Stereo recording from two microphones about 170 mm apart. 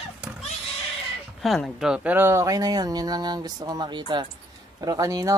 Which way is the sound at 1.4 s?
Centre (ahead or behind).